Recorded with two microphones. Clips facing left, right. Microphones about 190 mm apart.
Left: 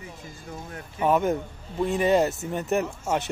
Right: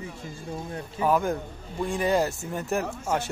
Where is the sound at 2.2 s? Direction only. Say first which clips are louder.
Left 3 dB; 20° left (ahead or behind).